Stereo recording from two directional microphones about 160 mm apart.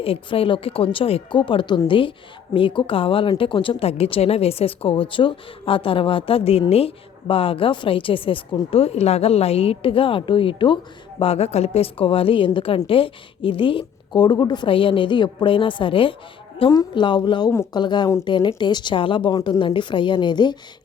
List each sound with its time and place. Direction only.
0.0 s a woman's voice: 35° left (ahead or behind)